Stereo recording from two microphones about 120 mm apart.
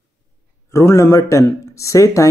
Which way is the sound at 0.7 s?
25° left (ahead or behind).